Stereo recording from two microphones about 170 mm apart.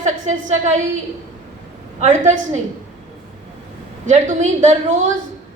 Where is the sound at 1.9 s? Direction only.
45° right (ahead or behind).